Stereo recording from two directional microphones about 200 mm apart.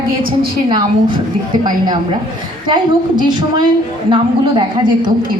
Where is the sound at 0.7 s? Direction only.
20° right (ahead or behind).